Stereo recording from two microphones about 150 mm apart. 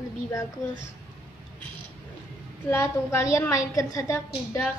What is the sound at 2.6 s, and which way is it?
A woman's voice, 15° left (ahead or behind).